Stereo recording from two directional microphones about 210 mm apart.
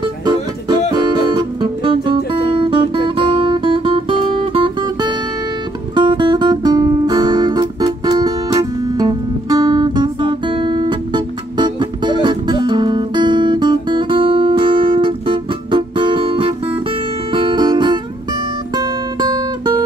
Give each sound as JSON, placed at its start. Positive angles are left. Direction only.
{"t": 0.0, "sound": "music", "side_deg": -20}
{"t": 3.4, "sound": "guitar", "side_deg": -25}
{"t": 5.9, "sound": "music", "side_deg": -20}